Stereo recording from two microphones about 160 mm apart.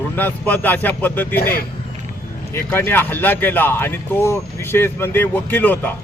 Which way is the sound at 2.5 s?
15° left (ahead or behind).